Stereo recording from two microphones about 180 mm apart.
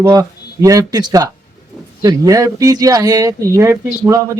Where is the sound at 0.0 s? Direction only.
20° right (ahead or behind).